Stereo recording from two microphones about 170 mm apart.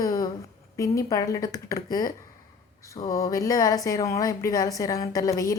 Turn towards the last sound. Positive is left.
turn(degrees=20)  # may be behind; listen again after turning